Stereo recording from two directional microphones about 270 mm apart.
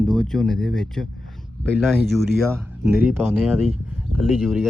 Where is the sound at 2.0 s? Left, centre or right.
Centre.